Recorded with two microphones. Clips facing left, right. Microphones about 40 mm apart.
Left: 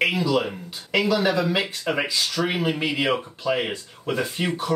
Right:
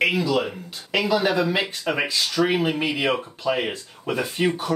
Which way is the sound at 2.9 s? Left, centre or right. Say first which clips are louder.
Even; centre.